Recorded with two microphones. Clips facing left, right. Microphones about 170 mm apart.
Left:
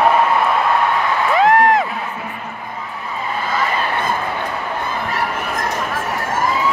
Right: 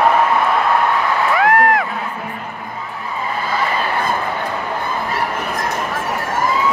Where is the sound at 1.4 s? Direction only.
25° left (ahead or behind).